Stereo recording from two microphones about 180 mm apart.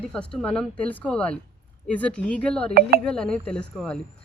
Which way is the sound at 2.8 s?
60° right (ahead or behind).